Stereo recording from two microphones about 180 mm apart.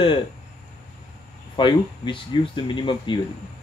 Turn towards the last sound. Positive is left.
turn(degrees=25)  # may be behind; listen again after turning